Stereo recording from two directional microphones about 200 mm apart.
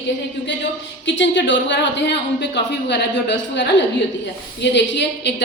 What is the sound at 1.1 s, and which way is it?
A woman's voice, 65° left (ahead or behind).